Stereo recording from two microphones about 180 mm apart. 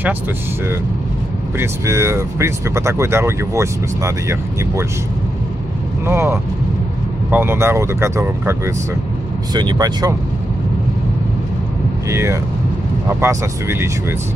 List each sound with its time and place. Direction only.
1.6 s speech: 15° right (ahead or behind)
6.0 s speech: 15° right (ahead or behind)
12.1 s speech: 15° right (ahead or behind)